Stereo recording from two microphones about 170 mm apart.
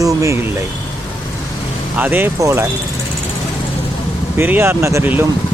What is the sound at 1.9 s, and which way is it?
Speech, 10° right (ahead or behind).